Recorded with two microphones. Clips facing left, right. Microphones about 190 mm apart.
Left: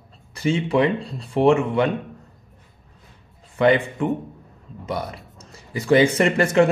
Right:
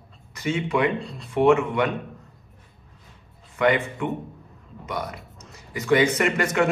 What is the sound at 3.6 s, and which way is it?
Speech, 30° left (ahead or behind).